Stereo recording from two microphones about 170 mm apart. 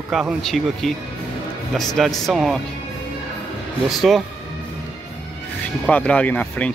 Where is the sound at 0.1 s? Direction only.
Centre (ahead or behind).